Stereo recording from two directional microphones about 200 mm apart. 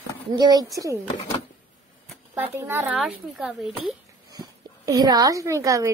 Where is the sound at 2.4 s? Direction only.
10° right (ahead or behind).